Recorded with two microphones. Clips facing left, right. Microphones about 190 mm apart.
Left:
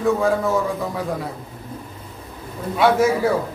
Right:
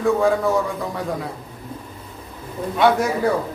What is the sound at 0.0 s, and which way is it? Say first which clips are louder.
A man's voice: right 1 dB; centre (ahead or behind).